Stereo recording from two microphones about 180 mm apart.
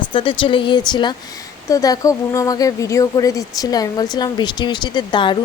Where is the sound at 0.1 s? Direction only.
25° left (ahead or behind).